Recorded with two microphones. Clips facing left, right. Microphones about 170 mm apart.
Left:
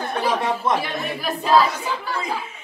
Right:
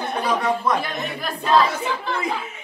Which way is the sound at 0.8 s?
5° left (ahead or behind).